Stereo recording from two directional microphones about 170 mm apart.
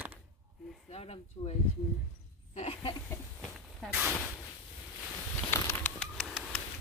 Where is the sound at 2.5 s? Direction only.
35° left (ahead or behind).